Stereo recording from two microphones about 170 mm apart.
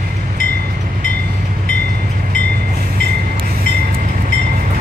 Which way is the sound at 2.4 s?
65° right (ahead or behind).